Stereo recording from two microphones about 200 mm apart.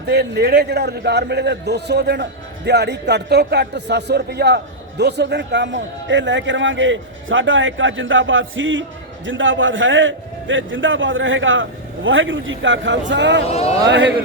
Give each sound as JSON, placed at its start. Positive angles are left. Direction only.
{"t": 0.1, "sound": "a man's voice", "side_deg": -55}
{"t": 13.5, "sound": "a man's voice", "side_deg": 30}
{"t": 13.8, "sound": "a man's voice", "side_deg": -60}